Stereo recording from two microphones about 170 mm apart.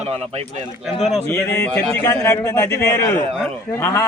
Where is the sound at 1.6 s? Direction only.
15° left (ahead or behind).